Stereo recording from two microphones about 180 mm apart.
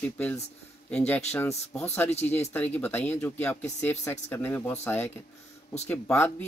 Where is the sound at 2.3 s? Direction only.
10° left (ahead or behind).